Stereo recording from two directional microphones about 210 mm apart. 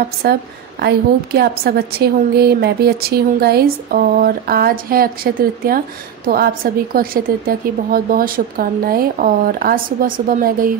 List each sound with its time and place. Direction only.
0.2 s a woman's voice: 50° right (ahead or behind)